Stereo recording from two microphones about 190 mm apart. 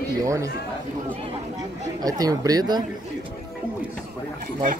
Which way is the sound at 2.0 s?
20° right (ahead or behind).